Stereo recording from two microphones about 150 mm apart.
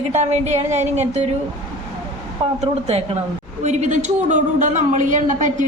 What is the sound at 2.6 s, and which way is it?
A woman's voice, 45° right (ahead or behind).